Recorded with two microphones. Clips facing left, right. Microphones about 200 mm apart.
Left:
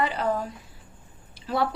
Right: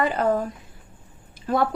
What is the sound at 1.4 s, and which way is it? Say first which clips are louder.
Speech: right 4 dB; 50° right (ahead or behind).